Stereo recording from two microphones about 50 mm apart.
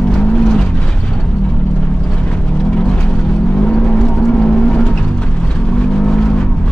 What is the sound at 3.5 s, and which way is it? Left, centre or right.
Vehicle, left.